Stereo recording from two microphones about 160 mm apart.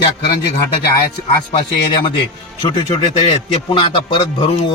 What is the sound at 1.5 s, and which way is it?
Speech, 35° left (ahead or behind).